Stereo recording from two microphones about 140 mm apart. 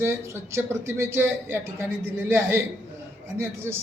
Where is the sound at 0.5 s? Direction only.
20° right (ahead or behind).